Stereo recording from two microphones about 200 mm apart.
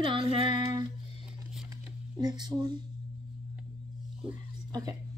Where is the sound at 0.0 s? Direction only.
25° right (ahead or behind).